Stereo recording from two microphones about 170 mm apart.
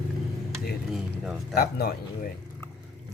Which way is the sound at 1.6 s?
60° left (ahead or behind).